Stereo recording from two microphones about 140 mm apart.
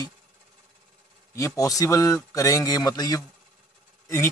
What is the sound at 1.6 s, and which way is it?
Speech, 25° left (ahead or behind).